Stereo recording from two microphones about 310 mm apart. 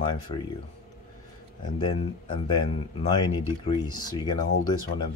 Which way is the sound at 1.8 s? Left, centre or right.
Centre.